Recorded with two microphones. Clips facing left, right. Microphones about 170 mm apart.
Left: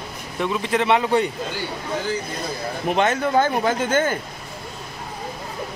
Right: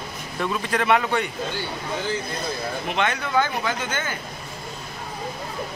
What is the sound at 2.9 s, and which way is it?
Speech, 40° left (ahead or behind).